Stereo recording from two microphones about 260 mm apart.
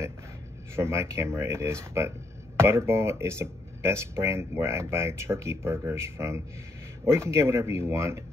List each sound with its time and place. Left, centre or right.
0.7 s speech: centre